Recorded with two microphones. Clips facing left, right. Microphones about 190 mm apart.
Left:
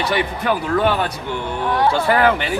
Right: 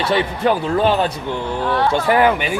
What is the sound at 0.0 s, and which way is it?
Speech, 25° right (ahead or behind).